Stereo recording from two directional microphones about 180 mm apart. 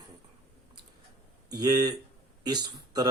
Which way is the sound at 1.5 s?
20° right (ahead or behind).